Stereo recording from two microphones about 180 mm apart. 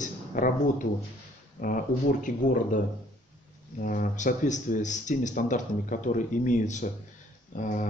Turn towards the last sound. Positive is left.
turn(degrees=45)  # may be behind; listen again after turning